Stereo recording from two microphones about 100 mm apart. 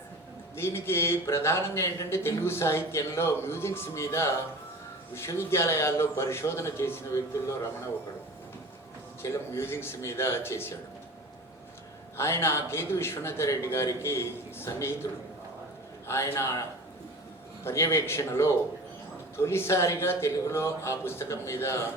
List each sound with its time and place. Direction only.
0.5 s speech: 25° left (ahead or behind)
9.2 s speech: 25° left (ahead or behind)
12.1 s speech: 25° left (ahead or behind)
16.0 s speech: 25° left (ahead or behind)
17.7 s speech: 25° left (ahead or behind)